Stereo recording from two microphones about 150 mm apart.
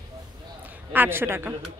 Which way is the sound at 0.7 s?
15° right (ahead or behind).